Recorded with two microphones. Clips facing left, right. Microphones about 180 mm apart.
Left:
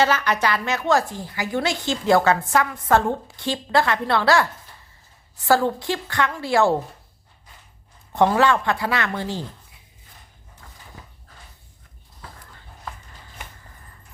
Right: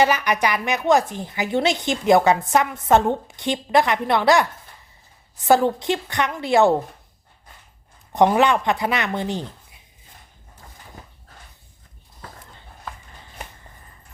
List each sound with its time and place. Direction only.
0.0 s a woman's voice: 15° right (ahead or behind)
5.5 s speech: 20° right (ahead or behind)
8.1 s speech: 15° right (ahead or behind)